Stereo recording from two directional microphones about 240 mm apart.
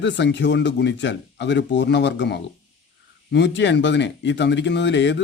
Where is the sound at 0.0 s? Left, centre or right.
Left.